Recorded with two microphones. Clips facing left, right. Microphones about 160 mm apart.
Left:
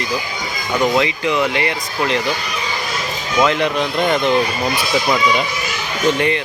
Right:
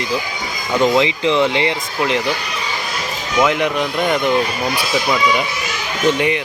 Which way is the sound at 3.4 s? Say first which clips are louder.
Even; 15° right (ahead or behind).